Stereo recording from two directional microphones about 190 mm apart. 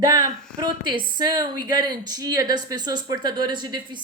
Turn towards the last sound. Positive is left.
turn(degrees=-25)  # may be behind; listen again after turning